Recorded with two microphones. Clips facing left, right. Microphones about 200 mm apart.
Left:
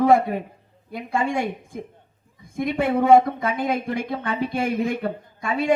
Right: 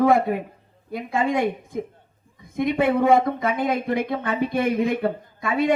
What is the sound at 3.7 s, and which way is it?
Speech, 50° right (ahead or behind).